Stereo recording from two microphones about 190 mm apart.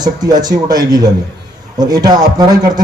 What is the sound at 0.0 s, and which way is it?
A man's voice, 20° right (ahead or behind).